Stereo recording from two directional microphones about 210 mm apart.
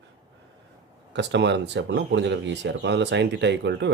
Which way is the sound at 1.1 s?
55° right (ahead or behind).